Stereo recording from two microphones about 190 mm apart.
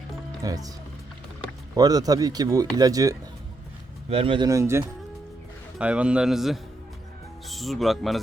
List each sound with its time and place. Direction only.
0.4 s speech: 20° right (ahead or behind)
1.7 s speech: 20° right (ahead or behind); by 8.2 s centre (ahead or behind)